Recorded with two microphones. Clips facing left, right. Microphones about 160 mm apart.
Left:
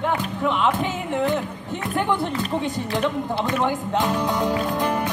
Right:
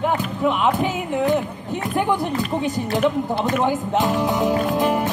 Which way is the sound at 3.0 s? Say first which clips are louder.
Right 4 dB; 20° right (ahead or behind).